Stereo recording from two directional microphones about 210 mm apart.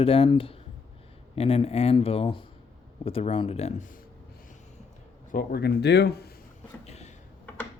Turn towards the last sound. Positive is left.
turn(degrees=30)  # may be behind; listen again after turning